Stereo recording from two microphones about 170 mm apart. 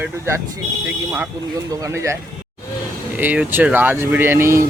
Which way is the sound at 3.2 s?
10° right (ahead or behind).